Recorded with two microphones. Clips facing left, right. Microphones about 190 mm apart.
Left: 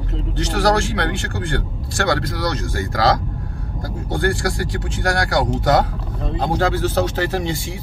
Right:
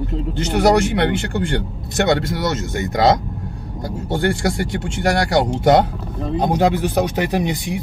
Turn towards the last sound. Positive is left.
turn(degrees=-20)  # may be behind; listen again after turning